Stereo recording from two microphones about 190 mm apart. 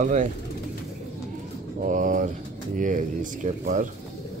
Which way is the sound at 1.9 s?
45° right (ahead or behind).